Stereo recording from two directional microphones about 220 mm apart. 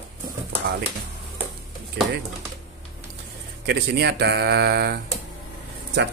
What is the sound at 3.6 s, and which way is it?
Speech, 50° right (ahead or behind).